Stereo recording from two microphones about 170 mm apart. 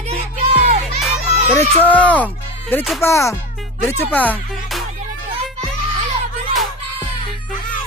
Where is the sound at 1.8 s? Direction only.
10° left (ahead or behind).